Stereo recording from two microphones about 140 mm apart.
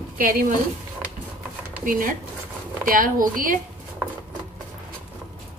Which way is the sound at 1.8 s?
80° right.